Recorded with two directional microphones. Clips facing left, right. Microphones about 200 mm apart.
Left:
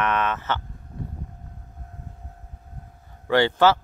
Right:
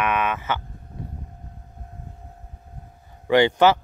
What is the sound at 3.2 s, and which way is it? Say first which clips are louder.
Speech: right 2 dB; 15° right (ahead or behind).